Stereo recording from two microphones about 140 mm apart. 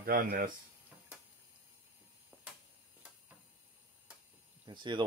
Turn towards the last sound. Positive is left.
turn(degrees=-35)  # may be behind; listen again after turning